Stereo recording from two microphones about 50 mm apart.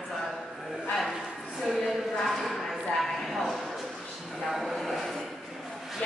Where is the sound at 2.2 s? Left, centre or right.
Centre.